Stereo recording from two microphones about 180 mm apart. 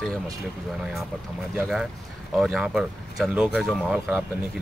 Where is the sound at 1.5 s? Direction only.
Centre (ahead or behind).